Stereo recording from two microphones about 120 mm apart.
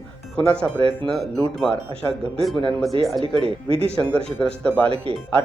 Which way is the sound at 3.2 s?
50° right (ahead or behind).